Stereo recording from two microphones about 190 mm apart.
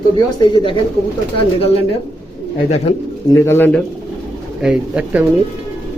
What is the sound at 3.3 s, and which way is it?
Speech, 10° left (ahead or behind).